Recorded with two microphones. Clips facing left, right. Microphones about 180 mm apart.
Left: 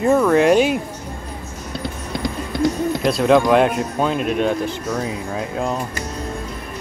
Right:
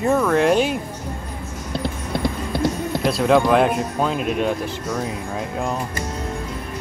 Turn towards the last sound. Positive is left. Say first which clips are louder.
# left 2 dB
turn(degrees=0)  # may be behind; listen again after turning